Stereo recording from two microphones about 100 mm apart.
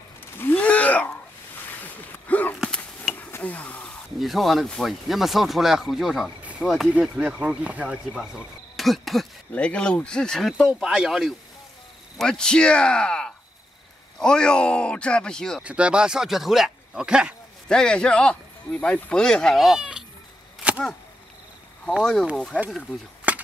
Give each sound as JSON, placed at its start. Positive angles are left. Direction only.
{"t": 0.4, "sound": "a sound", "side_deg": 15}
{"t": 4.2, "sound": "speech", "side_deg": 0}
{"t": 6.9, "sound": "speech", "side_deg": -10}
{"t": 9.5, "sound": "speech", "side_deg": 15}
{"t": 15.6, "sound": "speech", "side_deg": -10}
{"t": 17.6, "sound": "speech", "side_deg": 10}
{"t": 23.3, "sound": "cap gun", "side_deg": -15}